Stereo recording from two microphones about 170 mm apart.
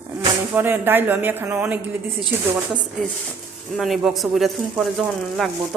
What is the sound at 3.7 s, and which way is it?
Speech, centre (ahead or behind).